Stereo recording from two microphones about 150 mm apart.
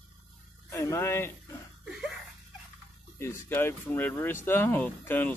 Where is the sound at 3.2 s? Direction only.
20° left (ahead or behind).